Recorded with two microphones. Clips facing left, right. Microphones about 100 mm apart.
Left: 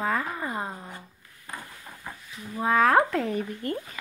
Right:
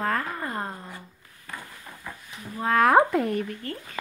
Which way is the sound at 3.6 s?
20° left (ahead or behind).